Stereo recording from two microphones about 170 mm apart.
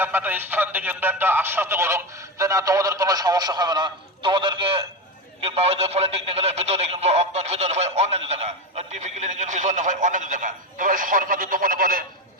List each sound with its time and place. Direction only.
0.0 s speech: 10° right (ahead or behind); by 12.0 s 55° right (ahead or behind)